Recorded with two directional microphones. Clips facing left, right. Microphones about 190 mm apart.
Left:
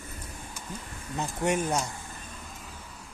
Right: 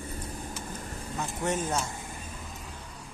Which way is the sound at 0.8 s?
40° right (ahead or behind).